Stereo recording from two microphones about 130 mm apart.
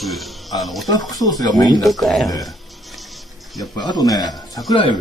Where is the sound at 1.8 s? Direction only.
Centre (ahead or behind).